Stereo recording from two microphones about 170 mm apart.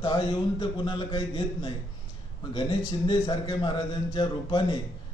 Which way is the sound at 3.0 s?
25° left (ahead or behind).